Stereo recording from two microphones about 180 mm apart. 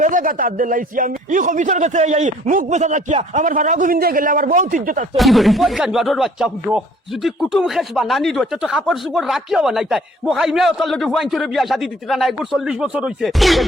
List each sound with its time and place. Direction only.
0.0 s a man's voice: 50° right (ahead or behind)
5.1 s speech: centre (ahead or behind)